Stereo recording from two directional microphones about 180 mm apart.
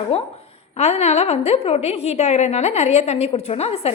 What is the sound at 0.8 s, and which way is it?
A woman's voice, 35° left (ahead or behind).